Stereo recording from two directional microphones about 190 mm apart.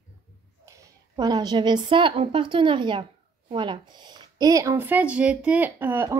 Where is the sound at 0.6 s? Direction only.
15° right (ahead or behind).